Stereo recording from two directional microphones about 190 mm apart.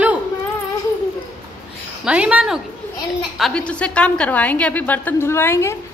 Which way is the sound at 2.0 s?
5° right (ahead or behind).